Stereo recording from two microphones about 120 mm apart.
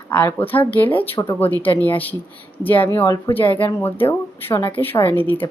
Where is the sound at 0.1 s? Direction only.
15° left (ahead or behind).